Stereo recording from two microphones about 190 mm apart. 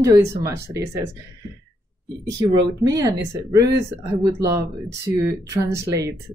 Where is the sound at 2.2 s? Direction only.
20° right (ahead or behind).